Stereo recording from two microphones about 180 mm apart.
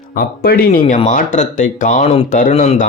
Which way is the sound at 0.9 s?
45° left (ahead or behind).